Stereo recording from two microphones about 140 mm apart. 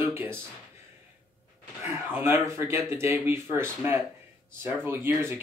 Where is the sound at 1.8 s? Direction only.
15° right (ahead or behind).